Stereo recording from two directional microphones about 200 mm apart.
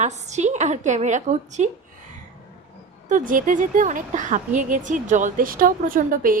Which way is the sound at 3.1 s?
40° right (ahead or behind).